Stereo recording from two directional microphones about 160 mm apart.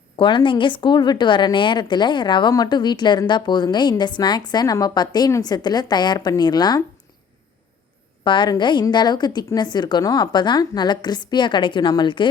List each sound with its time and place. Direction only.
0.2 s a woman's voice: 30° left (ahead or behind)
8.2 s a woman's voice: 30° left (ahead or behind)